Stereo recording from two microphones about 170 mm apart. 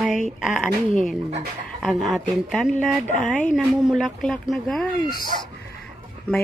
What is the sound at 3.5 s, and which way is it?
Speech, centre (ahead or behind).